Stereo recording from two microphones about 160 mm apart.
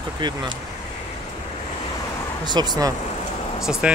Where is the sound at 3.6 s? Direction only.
5° right (ahead or behind).